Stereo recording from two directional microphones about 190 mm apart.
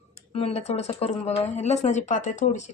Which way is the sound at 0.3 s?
35° left (ahead or behind).